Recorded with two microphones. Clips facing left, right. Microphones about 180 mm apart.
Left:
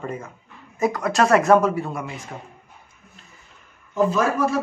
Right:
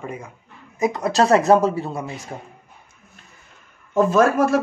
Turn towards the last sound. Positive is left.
turn(degrees=-50)  # may be behind; listen again after turning